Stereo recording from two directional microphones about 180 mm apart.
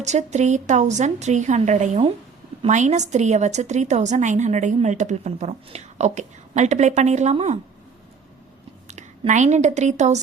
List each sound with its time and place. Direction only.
0.0 s a woman's voice: 40° right (ahead or behind)
8.9 s a woman's voice: 40° right (ahead or behind)